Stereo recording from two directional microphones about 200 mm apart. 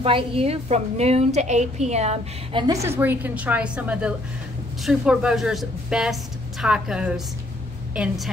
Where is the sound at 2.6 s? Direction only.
15° right (ahead or behind).